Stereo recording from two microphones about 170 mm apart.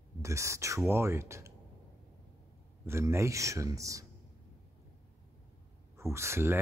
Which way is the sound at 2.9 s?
15° right (ahead or behind).